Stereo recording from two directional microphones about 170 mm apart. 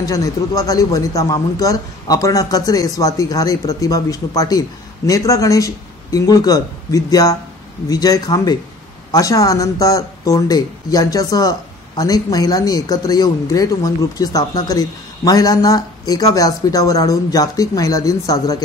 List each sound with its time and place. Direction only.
0.0 s speech: 20° left (ahead or behind)